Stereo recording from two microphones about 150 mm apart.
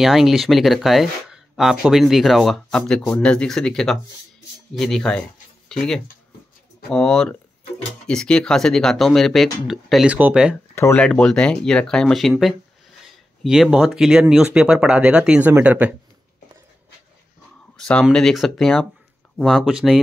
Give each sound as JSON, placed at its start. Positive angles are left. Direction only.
{"t": 0.0, "sound": "speech", "side_deg": 0}
{"t": 10.7, "sound": "a sound", "side_deg": 15}
{"t": 11.0, "sound": "speech", "side_deg": 5}
{"t": 17.7, "sound": "speech", "side_deg": 5}